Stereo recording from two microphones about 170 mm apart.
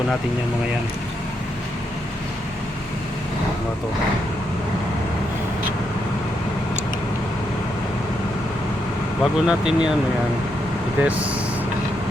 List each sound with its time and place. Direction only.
9.2 s speech: 5° right (ahead or behind)
11.0 s speech: 10° right (ahead or behind)